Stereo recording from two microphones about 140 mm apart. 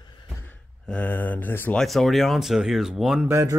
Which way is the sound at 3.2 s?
20° right (ahead or behind).